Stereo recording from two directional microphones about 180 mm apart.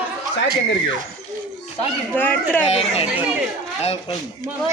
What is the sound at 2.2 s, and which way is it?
Speech, 10° left (ahead or behind).